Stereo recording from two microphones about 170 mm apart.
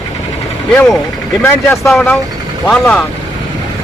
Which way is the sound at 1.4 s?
10° left (ahead or behind).